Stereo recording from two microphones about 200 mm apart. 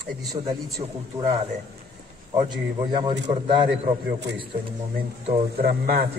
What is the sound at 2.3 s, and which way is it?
A man's voice, 20° right (ahead or behind).